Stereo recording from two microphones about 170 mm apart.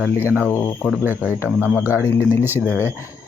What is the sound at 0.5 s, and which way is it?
Speech, 15° left (ahead or behind).